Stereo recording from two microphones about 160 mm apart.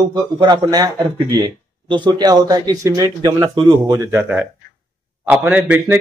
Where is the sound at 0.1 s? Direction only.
30° right (ahead or behind).